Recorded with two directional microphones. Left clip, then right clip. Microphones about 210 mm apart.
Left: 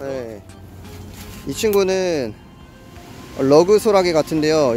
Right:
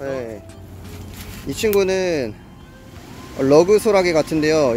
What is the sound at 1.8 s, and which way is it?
Speech, 15° left (ahead or behind).